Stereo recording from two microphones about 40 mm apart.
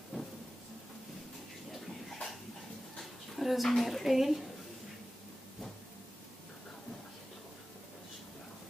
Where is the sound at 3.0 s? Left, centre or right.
Centre.